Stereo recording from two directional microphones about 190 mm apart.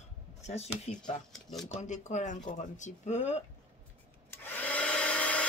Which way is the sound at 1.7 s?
40° left (ahead or behind).